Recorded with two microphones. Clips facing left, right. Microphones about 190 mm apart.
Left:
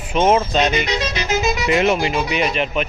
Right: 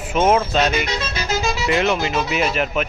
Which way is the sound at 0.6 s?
15° left (ahead or behind).